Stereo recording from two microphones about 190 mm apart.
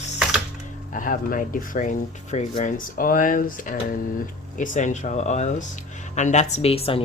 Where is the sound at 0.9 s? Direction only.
45° left (ahead or behind).